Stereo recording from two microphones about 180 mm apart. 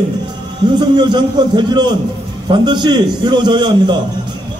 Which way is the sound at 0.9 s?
25° right (ahead or behind).